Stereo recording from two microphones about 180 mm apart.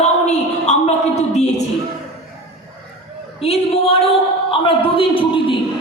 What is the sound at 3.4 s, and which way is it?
Speech, 35° left (ahead or behind).